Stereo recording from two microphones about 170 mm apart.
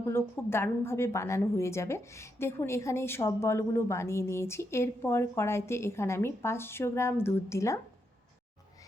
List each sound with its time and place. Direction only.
0.0 s a woman's voice: 15° left (ahead or behind)